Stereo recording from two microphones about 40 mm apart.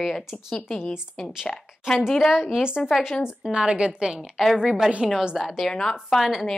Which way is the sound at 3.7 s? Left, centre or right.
Right.